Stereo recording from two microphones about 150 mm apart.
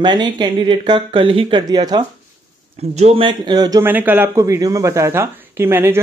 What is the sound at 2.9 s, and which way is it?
Speech, 40° right (ahead or behind).